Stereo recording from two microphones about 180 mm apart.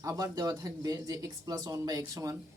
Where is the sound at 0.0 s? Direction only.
20° right (ahead or behind).